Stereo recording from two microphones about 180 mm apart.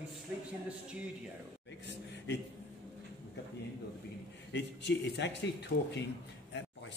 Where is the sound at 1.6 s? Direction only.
80° left.